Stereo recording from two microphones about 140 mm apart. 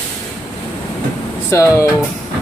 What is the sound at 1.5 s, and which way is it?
Speech, 20° left (ahead or behind).